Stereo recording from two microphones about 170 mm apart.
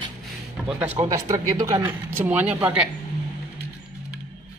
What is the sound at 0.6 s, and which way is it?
Speech, 10° right (ahead or behind).